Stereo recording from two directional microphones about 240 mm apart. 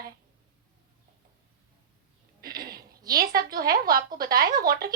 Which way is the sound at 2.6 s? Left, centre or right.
Right.